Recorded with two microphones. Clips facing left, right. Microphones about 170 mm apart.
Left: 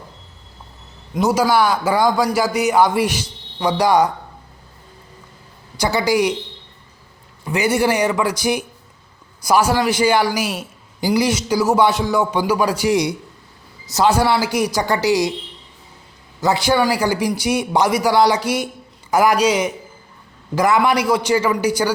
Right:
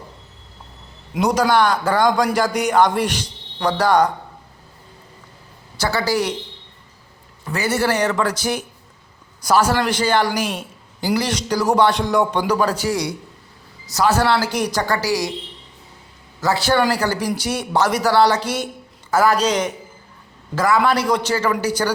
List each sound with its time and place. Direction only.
1.1 s a man's voice: 5° left (ahead or behind)
5.7 s a man's voice: 15° left (ahead or behind)
7.4 s a man's voice: 15° left (ahead or behind)
14.2 s a man's voice: 10° left (ahead or behind)
16.4 s a man's voice: 15° left (ahead or behind)